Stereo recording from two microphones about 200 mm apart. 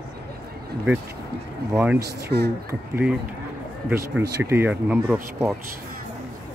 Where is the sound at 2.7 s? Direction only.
10° right (ahead or behind).